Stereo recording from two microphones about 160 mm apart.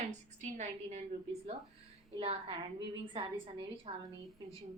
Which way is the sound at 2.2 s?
35° right (ahead or behind).